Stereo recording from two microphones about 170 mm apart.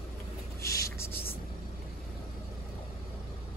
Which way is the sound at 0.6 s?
15° left (ahead or behind).